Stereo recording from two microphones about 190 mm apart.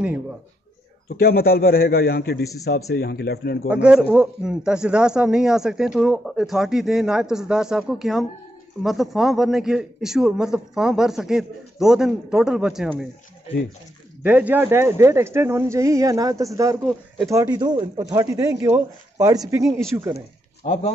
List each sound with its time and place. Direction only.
1.0 s a man's voice: 55° left (ahead or behind)
3.6 s speech: 5° right (ahead or behind)
14.2 s a man's voice: 10° right (ahead or behind)